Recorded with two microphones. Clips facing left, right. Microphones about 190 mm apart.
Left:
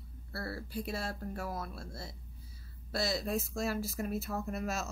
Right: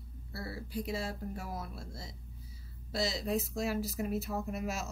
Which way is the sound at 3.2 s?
20° right (ahead or behind).